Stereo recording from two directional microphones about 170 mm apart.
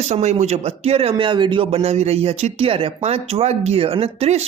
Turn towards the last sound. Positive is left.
turn(degrees=-35)  # may be behind; listen again after turning